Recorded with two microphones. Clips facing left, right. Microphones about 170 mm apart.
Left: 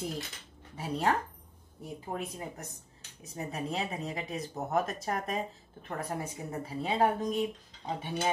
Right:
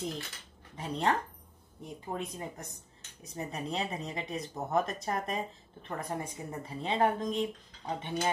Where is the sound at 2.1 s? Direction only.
5° left (ahead or behind).